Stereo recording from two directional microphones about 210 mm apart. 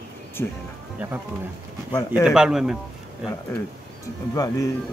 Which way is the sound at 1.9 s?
15° left (ahead or behind).